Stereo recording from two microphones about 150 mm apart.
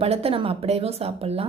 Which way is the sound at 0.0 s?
40° right (ahead or behind).